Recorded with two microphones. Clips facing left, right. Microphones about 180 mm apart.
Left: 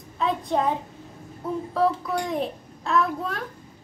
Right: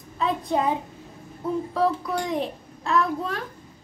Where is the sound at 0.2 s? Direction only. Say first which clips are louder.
Even; centre (ahead or behind).